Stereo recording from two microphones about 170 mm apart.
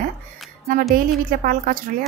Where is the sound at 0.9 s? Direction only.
55° right (ahead or behind).